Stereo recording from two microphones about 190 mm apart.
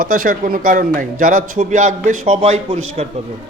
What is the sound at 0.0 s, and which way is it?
A man's voice, 45° right (ahead or behind).